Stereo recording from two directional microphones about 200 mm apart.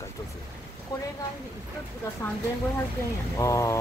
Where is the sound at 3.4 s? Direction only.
15° left (ahead or behind).